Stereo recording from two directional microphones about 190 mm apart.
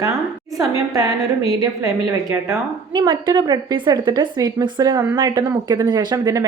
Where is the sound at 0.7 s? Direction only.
15° right (ahead or behind).